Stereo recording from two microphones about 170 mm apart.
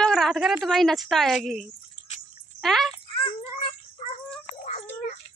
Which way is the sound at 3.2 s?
40° left (ahead or behind).